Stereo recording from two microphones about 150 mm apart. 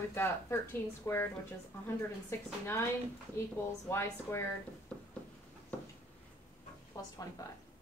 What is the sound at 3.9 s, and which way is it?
Speech, 15° left (ahead or behind).